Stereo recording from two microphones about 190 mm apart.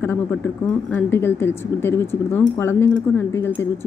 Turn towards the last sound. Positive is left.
turn(degrees=10)  # may be behind; listen again after turning